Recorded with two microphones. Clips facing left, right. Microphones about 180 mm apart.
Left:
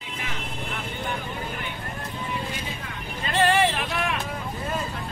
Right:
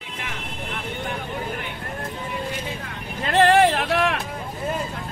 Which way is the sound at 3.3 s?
60° right (ahead or behind).